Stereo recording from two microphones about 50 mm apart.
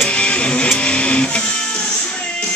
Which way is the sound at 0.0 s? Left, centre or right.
Left.